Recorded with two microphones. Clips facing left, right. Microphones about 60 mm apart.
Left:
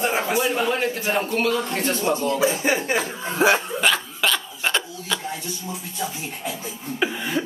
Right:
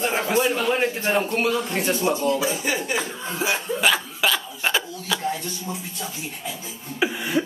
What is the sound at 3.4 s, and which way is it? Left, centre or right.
Speech, left.